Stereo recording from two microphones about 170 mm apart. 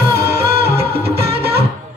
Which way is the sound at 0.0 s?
70° right (ahead or behind).